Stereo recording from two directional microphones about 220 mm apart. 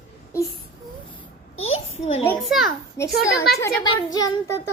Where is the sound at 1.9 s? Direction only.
30° left (ahead or behind).